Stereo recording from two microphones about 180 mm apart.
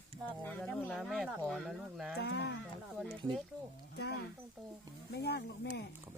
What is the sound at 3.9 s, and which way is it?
Speech, 65° left (ahead or behind).